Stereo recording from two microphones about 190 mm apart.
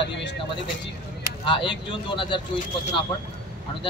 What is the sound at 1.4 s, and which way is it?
Speech, 25° left (ahead or behind).